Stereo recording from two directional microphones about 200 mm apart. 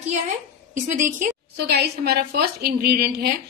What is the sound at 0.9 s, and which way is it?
Speech, 40° right (ahead or behind).